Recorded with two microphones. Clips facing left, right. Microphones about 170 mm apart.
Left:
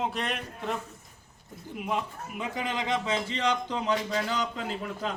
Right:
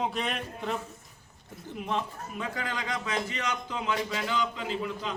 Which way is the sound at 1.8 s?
10° left (ahead or behind).